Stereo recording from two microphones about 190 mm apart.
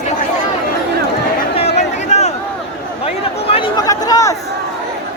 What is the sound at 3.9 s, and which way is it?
Chatter, 20° left (ahead or behind).